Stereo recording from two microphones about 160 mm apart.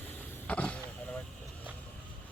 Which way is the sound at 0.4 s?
10° left (ahead or behind).